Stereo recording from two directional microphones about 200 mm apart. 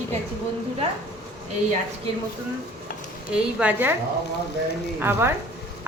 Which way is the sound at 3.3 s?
5° right (ahead or behind).